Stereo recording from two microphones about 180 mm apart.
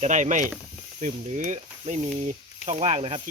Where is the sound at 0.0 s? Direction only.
40° right (ahead or behind).